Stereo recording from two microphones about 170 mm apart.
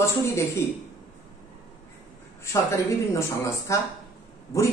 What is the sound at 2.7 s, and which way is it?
Speech, 15° left (ahead or behind).